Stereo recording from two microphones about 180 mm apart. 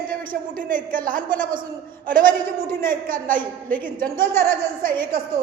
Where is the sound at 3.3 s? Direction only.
10° left (ahead or behind).